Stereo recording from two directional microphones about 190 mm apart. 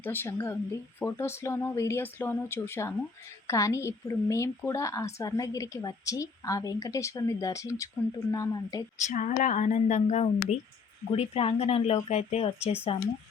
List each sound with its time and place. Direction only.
0.0 s a woman's voice: 10° left (ahead or behind)
9.0 s speech: 40° left (ahead or behind)